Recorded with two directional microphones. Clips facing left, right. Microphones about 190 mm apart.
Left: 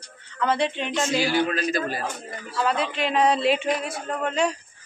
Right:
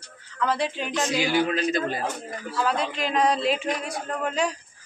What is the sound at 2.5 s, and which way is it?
Speech, centre (ahead or behind).